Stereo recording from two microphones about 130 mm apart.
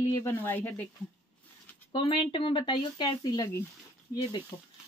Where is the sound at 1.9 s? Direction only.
40° left (ahead or behind).